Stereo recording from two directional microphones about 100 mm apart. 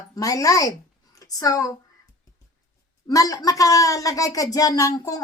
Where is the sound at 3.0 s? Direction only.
35° left (ahead or behind).